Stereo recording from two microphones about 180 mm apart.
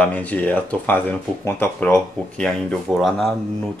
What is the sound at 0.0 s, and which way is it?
Speech, 10° left (ahead or behind).